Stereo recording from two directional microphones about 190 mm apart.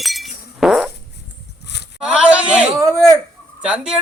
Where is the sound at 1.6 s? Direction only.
65° left (ahead or behind).